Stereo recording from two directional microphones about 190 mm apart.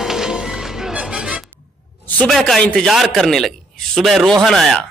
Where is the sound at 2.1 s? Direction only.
5° left (ahead or behind).